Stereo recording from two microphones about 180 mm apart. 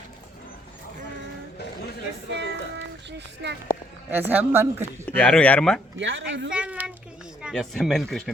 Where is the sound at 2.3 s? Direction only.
75° right (ahead or behind).